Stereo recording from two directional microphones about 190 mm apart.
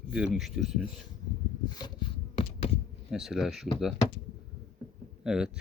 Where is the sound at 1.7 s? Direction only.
20° left (ahead or behind).